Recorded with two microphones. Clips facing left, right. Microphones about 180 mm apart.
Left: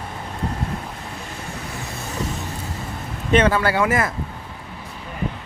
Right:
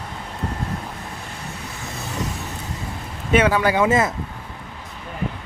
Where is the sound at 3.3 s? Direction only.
10° right (ahead or behind).